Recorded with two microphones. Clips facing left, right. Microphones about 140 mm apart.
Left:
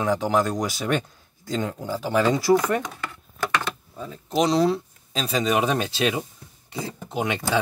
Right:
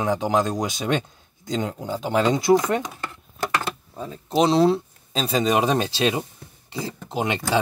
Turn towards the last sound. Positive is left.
turn(degrees=-25)  # may be behind; listen again after turning